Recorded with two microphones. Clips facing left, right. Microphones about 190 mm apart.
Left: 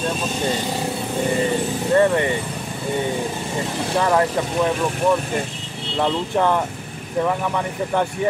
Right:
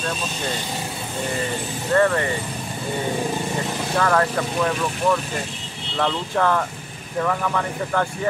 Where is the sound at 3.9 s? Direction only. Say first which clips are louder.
Left 2 dB; 20° left (ahead or behind).